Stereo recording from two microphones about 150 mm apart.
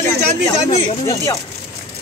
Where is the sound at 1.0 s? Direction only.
20° left (ahead or behind).